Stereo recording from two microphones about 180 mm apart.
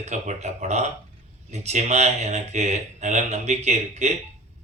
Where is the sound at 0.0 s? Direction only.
40° right (ahead or behind).